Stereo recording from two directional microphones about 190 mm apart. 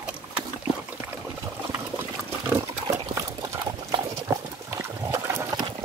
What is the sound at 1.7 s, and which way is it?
Water, 10° right (ahead or behind).